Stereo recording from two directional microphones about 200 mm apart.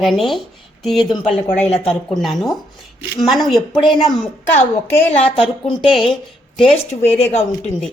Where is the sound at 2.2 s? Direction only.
Centre (ahead or behind).